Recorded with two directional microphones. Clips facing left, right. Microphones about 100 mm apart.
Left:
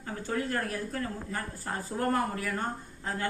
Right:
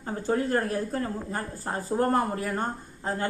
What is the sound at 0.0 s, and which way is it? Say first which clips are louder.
A woman's voice: right 6 dB; 30° right (ahead or behind).